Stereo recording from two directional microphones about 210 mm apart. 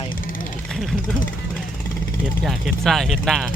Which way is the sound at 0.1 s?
40° left (ahead or behind).